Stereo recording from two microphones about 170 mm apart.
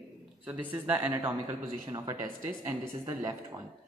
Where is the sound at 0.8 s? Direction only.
15° right (ahead or behind).